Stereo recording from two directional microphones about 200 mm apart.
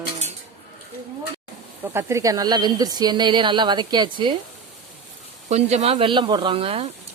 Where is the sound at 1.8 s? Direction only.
15° right (ahead or behind).